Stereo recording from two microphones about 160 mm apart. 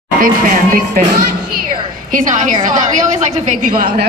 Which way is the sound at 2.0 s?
55° right (ahead or behind).